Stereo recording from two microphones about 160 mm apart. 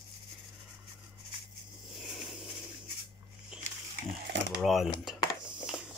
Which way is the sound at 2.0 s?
Centre (ahead or behind).